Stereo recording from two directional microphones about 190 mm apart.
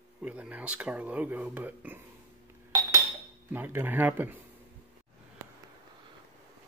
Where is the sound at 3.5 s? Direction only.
10° right (ahead or behind).